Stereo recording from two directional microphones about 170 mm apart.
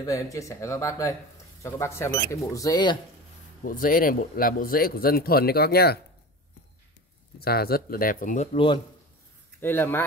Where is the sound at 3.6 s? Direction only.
55° left (ahead or behind).